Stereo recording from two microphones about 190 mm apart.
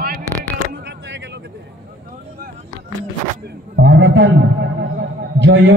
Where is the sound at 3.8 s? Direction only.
75° right (ahead or behind).